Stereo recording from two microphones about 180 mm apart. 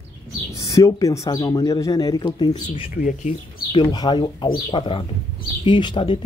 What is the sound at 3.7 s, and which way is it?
Speech, 25° left (ahead or behind).